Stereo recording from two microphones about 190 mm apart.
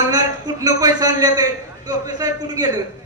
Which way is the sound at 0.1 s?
20° right (ahead or behind).